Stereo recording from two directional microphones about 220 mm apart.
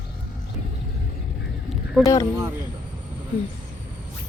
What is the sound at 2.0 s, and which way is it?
Speech, 15° left (ahead or behind).